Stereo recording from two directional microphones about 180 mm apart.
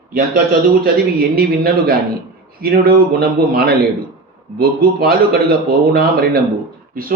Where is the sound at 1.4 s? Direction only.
55° right (ahead or behind).